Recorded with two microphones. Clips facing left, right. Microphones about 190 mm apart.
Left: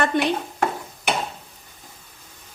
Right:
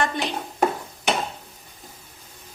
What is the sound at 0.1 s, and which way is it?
Stir, 60° left (ahead or behind).